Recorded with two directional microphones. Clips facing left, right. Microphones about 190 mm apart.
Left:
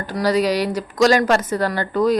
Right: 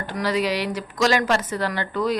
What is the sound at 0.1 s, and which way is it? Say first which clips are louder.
A woman's voice: left 5 dB; 40° left (ahead or behind).